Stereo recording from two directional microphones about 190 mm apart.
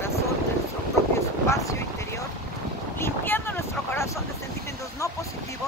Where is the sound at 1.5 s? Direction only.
15° left (ahead or behind).